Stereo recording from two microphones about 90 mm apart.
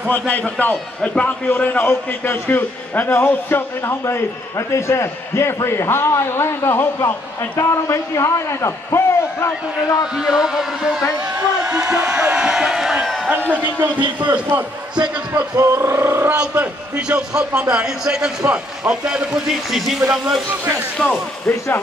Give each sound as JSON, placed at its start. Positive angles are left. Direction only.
{"t": 0.3, "sound": "a man's voice", "side_deg": 20}
{"t": 10.1, "sound": "a man's voice", "side_deg": -5}
{"t": 13.9, "sound": "speech", "side_deg": -60}
{"t": 15.0, "sound": "speech", "side_deg": -45}
{"t": 16.3, "sound": "a man's voice", "side_deg": -15}
{"t": 21.0, "sound": "speech", "side_deg": 15}
{"t": 21.5, "sound": "a man's voice", "side_deg": 30}